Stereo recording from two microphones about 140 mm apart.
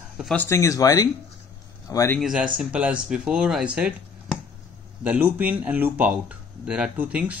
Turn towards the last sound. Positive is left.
turn(degrees=-10)  # may be behind; listen again after turning